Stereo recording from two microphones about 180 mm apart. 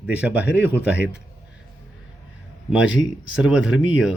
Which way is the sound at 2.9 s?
5° right (ahead or behind).